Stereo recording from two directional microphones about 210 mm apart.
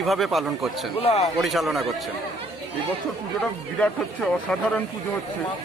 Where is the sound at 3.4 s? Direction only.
5° left (ahead or behind).